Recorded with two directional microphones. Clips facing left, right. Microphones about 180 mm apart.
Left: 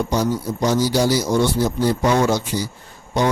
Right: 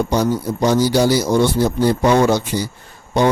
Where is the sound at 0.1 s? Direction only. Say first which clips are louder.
Right 3 dB; 60° right (ahead or behind).